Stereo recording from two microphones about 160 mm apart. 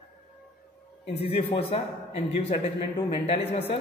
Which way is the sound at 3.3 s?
40° left (ahead or behind).